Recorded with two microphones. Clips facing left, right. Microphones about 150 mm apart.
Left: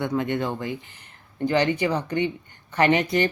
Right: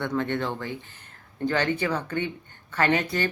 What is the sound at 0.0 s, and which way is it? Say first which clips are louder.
Speech: left 2 dB; 15° left (ahead or behind).